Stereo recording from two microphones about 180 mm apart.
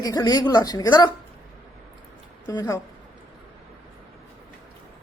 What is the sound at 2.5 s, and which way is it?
Speech, 20° left (ahead or behind).